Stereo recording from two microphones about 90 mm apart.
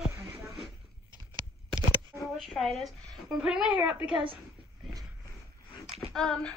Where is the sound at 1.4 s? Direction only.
60° right (ahead or behind).